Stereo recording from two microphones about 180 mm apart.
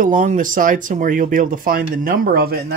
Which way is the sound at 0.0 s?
45° right (ahead or behind).